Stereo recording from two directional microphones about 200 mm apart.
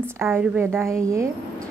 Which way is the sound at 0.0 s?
10° right (ahead or behind).